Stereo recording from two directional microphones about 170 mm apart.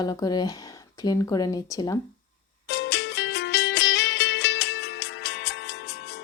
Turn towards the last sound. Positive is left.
turn(degrees=90)